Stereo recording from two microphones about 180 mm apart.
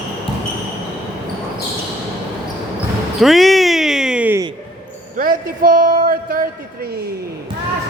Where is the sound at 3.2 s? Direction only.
Centre (ahead or behind).